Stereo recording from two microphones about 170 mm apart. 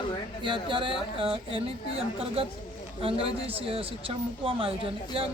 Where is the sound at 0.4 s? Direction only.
30° right (ahead or behind).